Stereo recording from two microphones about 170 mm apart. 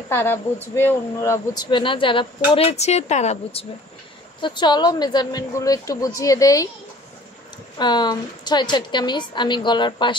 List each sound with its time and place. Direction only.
0.1 s speech: 10° left (ahead or behind); by 3.6 s 40° left (ahead or behind)
4.4 s speech: 25° left (ahead or behind)
7.8 s speech: 25° left (ahead or behind)